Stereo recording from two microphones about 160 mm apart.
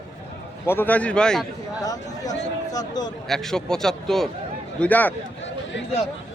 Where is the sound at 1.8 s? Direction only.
20° left (ahead or behind).